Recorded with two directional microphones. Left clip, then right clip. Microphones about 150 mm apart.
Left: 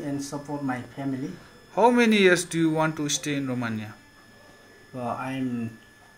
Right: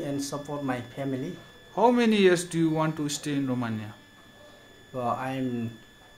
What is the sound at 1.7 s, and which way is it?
Speech, centre (ahead or behind).